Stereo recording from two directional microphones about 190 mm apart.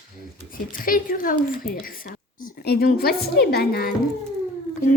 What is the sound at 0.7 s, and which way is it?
A woman's voice, 45° left (ahead or behind).